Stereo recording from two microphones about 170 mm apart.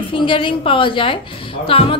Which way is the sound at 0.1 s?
30° left (ahead or behind).